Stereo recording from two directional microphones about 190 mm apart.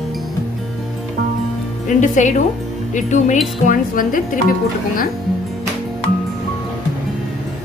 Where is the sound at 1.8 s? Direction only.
40° left (ahead or behind).